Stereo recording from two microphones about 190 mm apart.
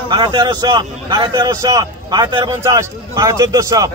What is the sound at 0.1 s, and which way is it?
A man's voice, 25° right (ahead or behind).